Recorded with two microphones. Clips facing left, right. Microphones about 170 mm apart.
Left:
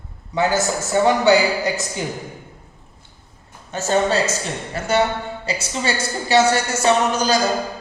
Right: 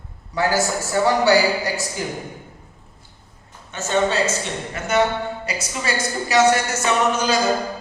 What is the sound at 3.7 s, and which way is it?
A woman's voice, 35° left (ahead or behind).